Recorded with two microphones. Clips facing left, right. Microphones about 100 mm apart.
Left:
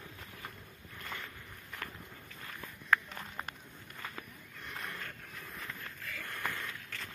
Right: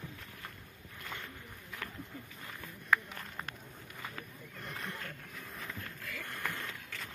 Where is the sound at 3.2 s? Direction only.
5° left (ahead or behind).